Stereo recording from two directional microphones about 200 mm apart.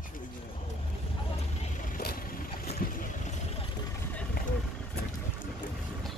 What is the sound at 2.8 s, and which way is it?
Vehicle, 45° left (ahead or behind).